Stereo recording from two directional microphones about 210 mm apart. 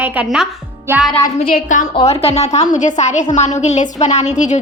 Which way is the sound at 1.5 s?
40° left (ahead or behind).